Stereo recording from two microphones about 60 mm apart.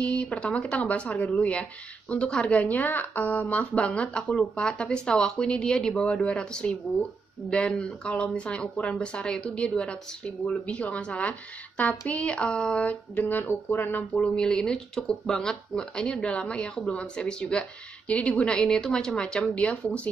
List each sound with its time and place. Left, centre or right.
0.0 s a woman's voice: centre
14.2 s speech: centre